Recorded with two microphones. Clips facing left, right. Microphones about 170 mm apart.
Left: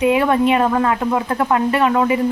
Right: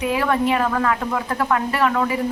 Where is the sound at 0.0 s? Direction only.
20° left (ahead or behind).